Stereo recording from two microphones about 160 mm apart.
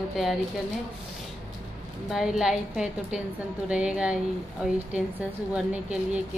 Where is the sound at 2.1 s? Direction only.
5° right (ahead or behind).